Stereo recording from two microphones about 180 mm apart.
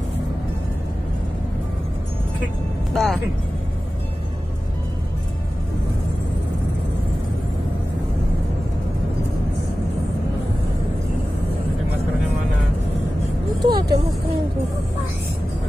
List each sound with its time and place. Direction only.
2.9 s speech: centre (ahead or behind)
13.6 s vehicle: 25° right (ahead or behind)